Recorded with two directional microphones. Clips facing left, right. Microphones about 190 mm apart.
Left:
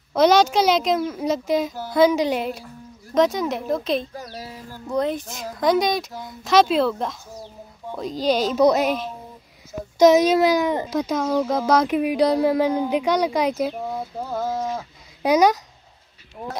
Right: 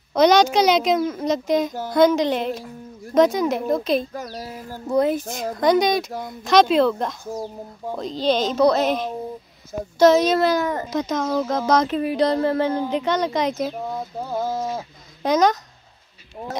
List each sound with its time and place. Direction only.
0.1 s a child's voice: 5° left (ahead or behind)
4.1 s a child's voice: 45° right (ahead or behind)
4.9 s a woman's voice: 5° right (ahead or behind)
5.2 s a child's voice: 50° right (ahead or behind)
5.6 s a woman's voice: centre (ahead or behind)
9.9 s speech: 15° left (ahead or behind)
14.3 s speech: 10° right (ahead or behind)
15.2 s speech: 10° left (ahead or behind)